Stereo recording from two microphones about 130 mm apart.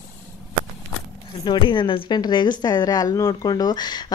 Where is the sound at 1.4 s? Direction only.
35° left (ahead or behind).